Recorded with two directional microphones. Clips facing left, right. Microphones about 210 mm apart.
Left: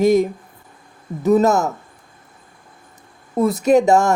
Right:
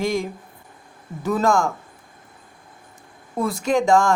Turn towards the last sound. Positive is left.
turn(degrees=20)  # may be behind; listen again after turning